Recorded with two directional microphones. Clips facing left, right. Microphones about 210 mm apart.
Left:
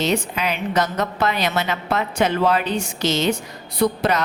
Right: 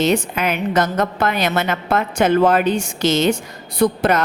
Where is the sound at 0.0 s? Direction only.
50° right (ahead or behind).